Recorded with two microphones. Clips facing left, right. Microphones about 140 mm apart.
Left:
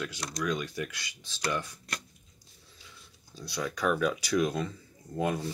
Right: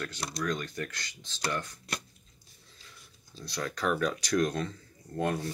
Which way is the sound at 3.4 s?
5° left (ahead or behind).